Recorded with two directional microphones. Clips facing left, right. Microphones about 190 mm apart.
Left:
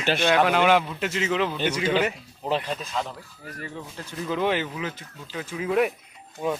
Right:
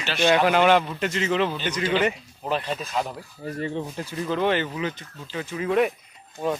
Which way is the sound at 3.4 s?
25° right (ahead or behind).